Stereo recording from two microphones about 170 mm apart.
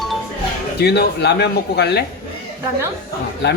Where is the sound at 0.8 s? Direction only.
75° left (ahead or behind).